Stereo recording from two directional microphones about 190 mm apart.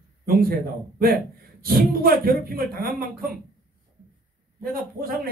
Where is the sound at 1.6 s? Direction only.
50° right (ahead or behind).